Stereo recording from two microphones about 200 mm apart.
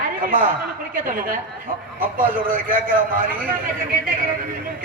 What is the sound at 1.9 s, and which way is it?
Speech, 45° right (ahead or behind).